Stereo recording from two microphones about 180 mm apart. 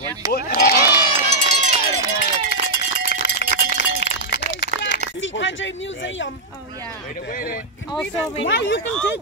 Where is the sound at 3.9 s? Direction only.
70° left (ahead or behind).